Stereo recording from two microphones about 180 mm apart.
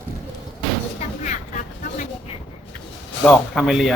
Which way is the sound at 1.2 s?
40° left (ahead or behind).